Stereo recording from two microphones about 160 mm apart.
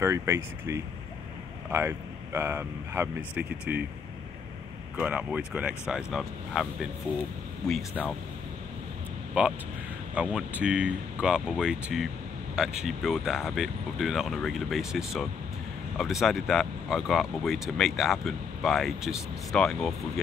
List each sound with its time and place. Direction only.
0.0 s speech: 15° right (ahead or behind)
4.9 s speech: 10° right (ahead or behind); by 8.1 s 5° left (ahead or behind)
9.4 s speech: 10° right (ahead or behind)